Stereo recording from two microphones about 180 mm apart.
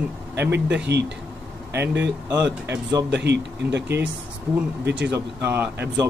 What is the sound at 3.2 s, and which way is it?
Speech, 70° right (ahead or behind).